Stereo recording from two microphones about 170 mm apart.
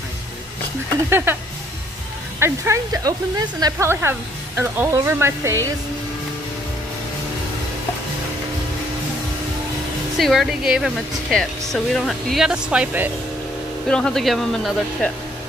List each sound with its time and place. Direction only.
1.1 s speech: 10° right (ahead or behind)
2.4 s speech: 15° right (ahead or behind)
10.1 s speech: centre (ahead or behind)
13.8 s speech: 5° left (ahead or behind)